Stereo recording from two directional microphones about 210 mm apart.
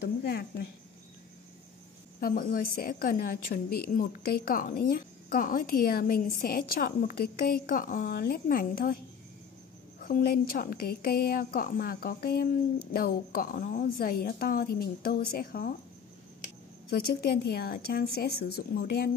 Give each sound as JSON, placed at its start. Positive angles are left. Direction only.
{"t": 0.0, "sound": "a sound", "side_deg": 50}
{"t": 2.1, "sound": "a woman's voice", "side_deg": 45}
{"t": 10.0, "sound": "a woman's voice", "side_deg": 40}
{"t": 17.4, "sound": "a woman's voice", "side_deg": 45}